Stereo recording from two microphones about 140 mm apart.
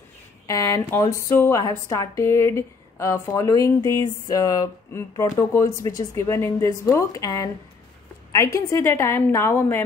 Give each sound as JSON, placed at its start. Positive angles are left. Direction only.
{"t": 0.5, "sound": "a woman's voice", "side_deg": 20}
{"t": 8.5, "sound": "a woman's voice", "side_deg": 20}